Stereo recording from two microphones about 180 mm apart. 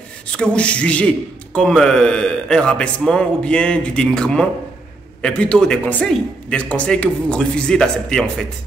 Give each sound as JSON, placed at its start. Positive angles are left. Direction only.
{"t": 0.3, "sound": "a man's voice", "side_deg": 5}